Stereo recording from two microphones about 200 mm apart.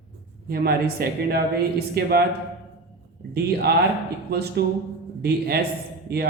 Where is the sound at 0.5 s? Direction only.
50° right (ahead or behind).